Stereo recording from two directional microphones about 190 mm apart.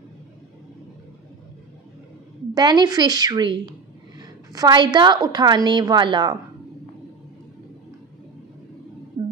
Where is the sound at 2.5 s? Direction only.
20° right (ahead or behind).